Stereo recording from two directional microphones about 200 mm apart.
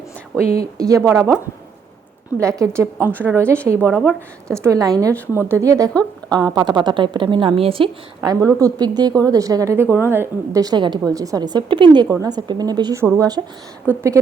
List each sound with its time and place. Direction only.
0.6 s a woman's voice: 15° right (ahead or behind)
2.4 s a woman's voice: 15° right (ahead or behind)
5.9 s speech: 5° left (ahead or behind)
6.3 s a woman's voice: 20° right (ahead or behind)